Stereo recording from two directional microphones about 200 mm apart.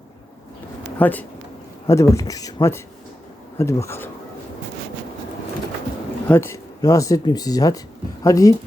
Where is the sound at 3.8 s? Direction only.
10° left (ahead or behind).